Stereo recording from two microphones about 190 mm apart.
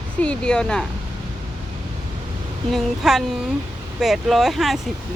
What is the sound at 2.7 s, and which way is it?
Speech, centre (ahead or behind).